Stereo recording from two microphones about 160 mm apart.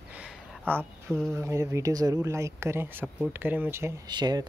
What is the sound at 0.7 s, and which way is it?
Speech, 15° right (ahead or behind).